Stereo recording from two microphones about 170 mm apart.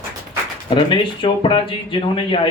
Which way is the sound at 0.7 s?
30° left (ahead or behind).